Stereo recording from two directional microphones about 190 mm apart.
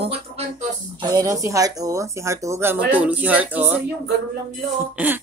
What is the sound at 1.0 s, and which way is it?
Speech, 20° right (ahead or behind).